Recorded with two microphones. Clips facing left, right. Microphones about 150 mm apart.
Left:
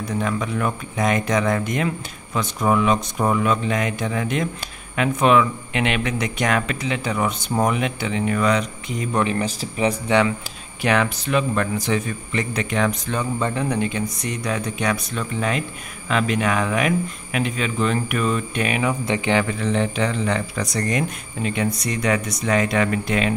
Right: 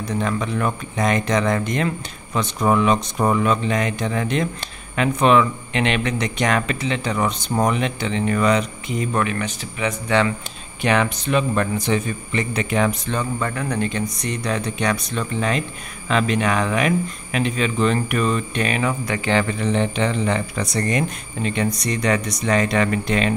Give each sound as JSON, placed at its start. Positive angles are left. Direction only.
{"t": 0.0, "sound": "speech", "side_deg": 5}
{"t": 9.2, "sound": "speech", "side_deg": 30}
{"t": 10.0, "sound": "speech", "side_deg": 10}
{"t": 10.8, "sound": "speech", "side_deg": 0}
{"t": 13.4, "sound": "speech", "side_deg": 20}
{"t": 19.4, "sound": "speech", "side_deg": 0}